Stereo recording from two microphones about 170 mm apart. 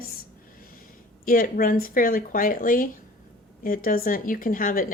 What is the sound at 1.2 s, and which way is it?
Speech, 55° left (ahead or behind).